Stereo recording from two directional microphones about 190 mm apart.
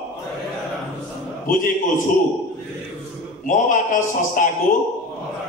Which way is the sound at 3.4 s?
40° left (ahead or behind).